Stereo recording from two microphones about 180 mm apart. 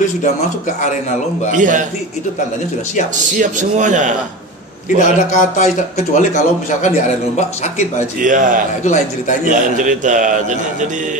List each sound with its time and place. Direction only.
1.5 s a man's voice: 45° right (ahead or behind)
3.3 s a man's voice: 45° right (ahead or behind)
4.8 s speech: 45° left (ahead or behind)
8.2 s a man's voice: 45° right (ahead or behind)
8.8 s speech: 40° left (ahead or behind)
9.5 s a man's voice: 45° right (ahead or behind)